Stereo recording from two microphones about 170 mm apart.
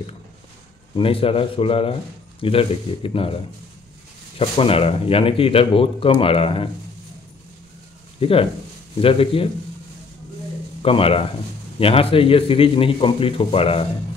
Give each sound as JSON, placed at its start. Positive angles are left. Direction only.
{"t": 0.9, "sound": "speech", "side_deg": 35}
{"t": 4.4, "sound": "speech", "side_deg": 35}
{"t": 8.2, "sound": "speech", "side_deg": 35}
{"t": 10.8, "sound": "speech", "side_deg": 35}